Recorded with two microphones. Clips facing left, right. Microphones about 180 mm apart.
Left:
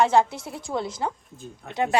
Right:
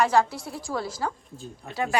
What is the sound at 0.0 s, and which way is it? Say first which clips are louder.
A woman's voice: left 2 dB; 25° left (ahead or behind).